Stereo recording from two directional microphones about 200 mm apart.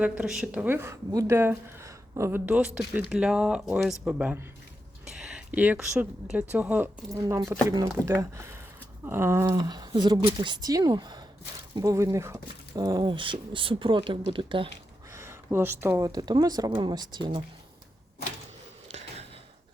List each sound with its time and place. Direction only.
0.0 s a woman's voice: 5° right (ahead or behind)
5.0 s a sound: 5° right (ahead or behind)
6.5 s a woman's voice: 10° right (ahead or behind); by 14.7 s 25° right (ahead or behind)
15.1 s speech: 10° right (ahead or behind)